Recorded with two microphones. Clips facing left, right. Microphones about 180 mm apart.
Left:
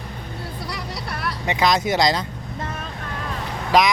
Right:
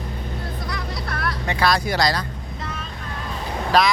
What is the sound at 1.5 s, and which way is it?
Speech, 20° left (ahead or behind).